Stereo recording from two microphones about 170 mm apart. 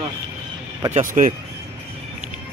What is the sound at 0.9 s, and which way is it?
Speech, 50° right (ahead or behind).